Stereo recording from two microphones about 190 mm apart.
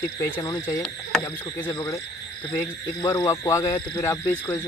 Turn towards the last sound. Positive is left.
turn(degrees=15)  # may be behind; listen again after turning